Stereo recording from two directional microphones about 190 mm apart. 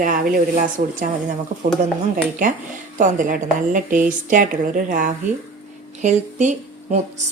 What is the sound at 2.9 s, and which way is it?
A woman's voice, 40° right (ahead or behind).